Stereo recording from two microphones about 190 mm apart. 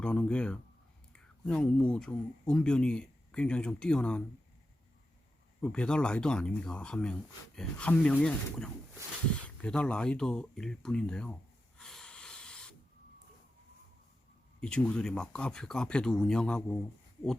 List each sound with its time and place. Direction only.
0.0 s speech: 5° left (ahead or behind)
5.6 s speech: 5° left (ahead or behind)
11.8 s a sound: 5° left (ahead or behind)
14.6 s speech: 5° left (ahead or behind)